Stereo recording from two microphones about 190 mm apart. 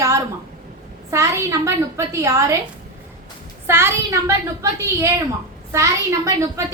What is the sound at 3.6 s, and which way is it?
A woman's voice, 15° right (ahead or behind).